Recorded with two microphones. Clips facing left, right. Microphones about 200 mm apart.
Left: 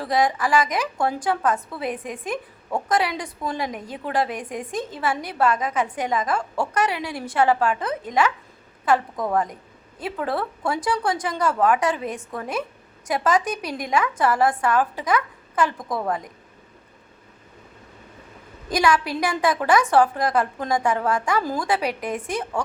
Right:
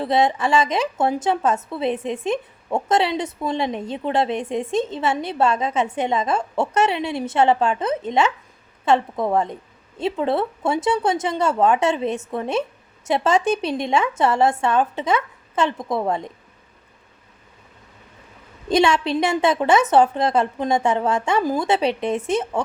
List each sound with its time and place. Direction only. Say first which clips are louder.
0.0 s a woman's voice: right 3 dB; 25° right (ahead or behind)
18.7 s a woman's voice: right 3 dB; 25° right (ahead or behind)